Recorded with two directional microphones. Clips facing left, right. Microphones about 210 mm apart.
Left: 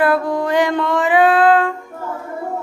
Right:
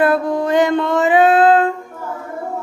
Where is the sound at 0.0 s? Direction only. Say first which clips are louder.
Right 1 dB; 25° right (ahead or behind).